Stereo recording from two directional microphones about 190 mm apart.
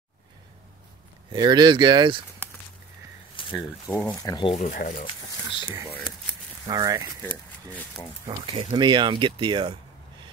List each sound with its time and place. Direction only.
1.3 s speech: 20° right (ahead or behind)
3.3 s a sound: 25° left (ahead or behind)
3.9 s speech: 10° left (ahead or behind)
4.6 s speech: 45° left (ahead or behind)
5.9 s speech: 5° left (ahead or behind)
6.6 s speech: 20° right (ahead or behind)
7.2 s speech: 10° left (ahead or behind)
8.3 s speech: 30° right (ahead or behind)